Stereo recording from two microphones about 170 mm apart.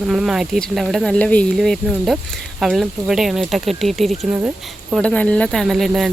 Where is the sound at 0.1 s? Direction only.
5° right (ahead or behind).